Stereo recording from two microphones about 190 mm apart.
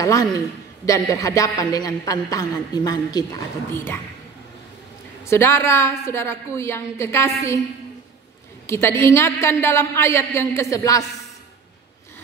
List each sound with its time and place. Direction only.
0.0 s a man's voice: 20° left (ahead or behind)
5.2 s a man's voice: 15° left (ahead or behind)
8.6 s a man's voice: 15° left (ahead or behind)